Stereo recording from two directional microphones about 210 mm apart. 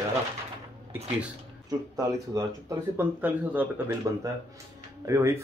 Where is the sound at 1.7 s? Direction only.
15° right (ahead or behind).